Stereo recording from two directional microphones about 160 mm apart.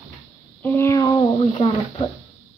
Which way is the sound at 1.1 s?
30° left (ahead or behind).